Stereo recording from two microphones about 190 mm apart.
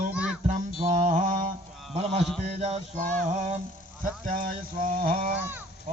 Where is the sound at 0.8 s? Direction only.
40° right (ahead or behind).